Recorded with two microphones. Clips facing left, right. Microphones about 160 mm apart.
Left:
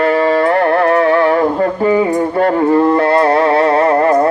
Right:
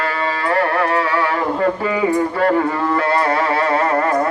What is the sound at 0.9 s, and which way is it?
Music, 50° left (ahead or behind).